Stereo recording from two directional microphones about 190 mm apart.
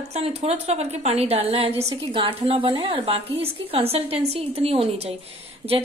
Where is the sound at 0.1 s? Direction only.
35° right (ahead or behind).